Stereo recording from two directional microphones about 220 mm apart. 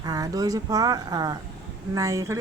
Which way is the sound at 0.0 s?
15° right (ahead or behind).